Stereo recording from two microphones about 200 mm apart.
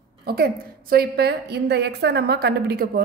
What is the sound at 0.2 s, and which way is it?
A woman's voice, 50° right (ahead or behind).